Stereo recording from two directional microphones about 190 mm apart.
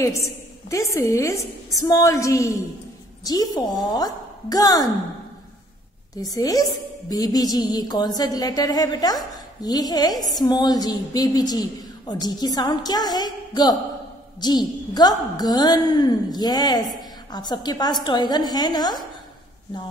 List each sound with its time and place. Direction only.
0.0 s a woman's voice: 15° left (ahead or behind)
6.3 s a woman's voice: 20° left (ahead or behind)